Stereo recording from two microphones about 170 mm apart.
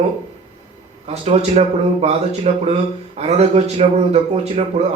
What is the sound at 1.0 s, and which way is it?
A man's voice, 40° right (ahead or behind).